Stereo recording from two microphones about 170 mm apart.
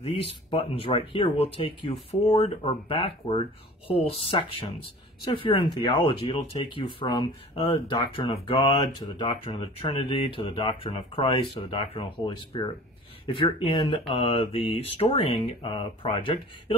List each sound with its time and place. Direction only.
0.0 s speech: 35° left (ahead or behind)